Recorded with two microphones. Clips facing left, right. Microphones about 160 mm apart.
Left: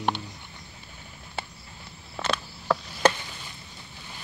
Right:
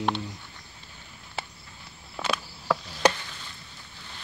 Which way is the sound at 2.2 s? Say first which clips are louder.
Left 1 dB; 10° right (ahead or behind).